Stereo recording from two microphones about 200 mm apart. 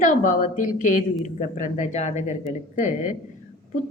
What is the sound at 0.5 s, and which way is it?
A woman's voice, 40° left (ahead or behind).